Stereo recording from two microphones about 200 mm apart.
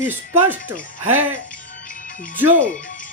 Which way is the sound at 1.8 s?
40° left (ahead or behind).